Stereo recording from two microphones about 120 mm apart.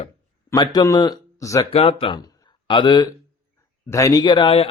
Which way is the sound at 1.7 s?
55° left (ahead or behind).